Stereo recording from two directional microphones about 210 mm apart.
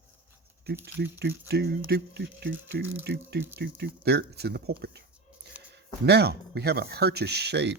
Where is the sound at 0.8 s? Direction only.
55° right (ahead or behind).